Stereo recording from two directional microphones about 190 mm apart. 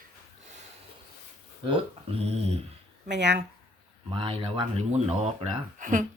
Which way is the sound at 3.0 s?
65° right (ahead or behind).